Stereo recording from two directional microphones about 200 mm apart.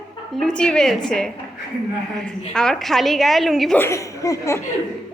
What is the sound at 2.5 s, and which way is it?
A woman's voice, 5° left (ahead or behind).